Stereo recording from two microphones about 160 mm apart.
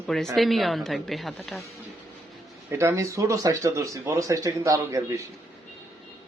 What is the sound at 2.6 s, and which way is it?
Speech, 15° right (ahead or behind).